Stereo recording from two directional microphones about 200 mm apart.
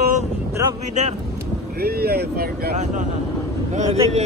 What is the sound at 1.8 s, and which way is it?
Speech, 50° right (ahead or behind).